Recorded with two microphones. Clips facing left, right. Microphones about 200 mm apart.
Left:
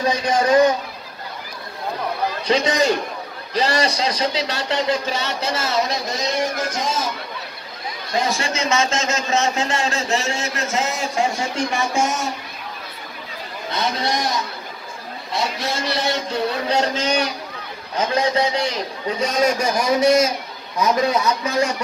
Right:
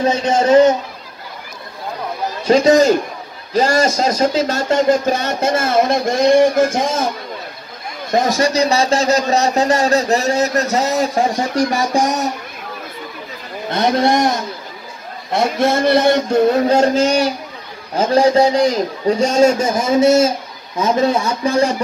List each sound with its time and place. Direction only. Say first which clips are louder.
0.0 s a man's voice: right 4 dB; 25° right (ahead or behind)
2.4 s speech: right 8 dB; 45° right (ahead or behind)
8.1 s a man's voice: right 7 dB; 40° right (ahead or behind)
13.7 s speech: right 8 dB; 55° right (ahead or behind)
18.3 s speech: right 8 dB; 45° right (ahead or behind)
19.0 s a man's voice: right 7 dB; 30° right (ahead or behind)